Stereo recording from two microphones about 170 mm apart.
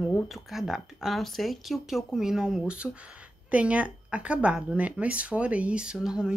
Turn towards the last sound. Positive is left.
turn(degrees=-5)  # may be behind; listen again after turning